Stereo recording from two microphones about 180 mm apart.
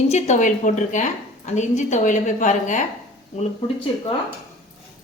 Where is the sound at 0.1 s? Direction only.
40° left (ahead or behind).